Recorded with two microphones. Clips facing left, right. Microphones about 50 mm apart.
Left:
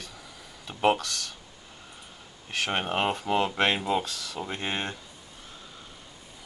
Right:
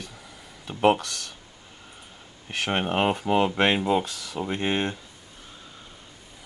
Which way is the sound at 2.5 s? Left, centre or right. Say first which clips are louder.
Right 2 dB; centre.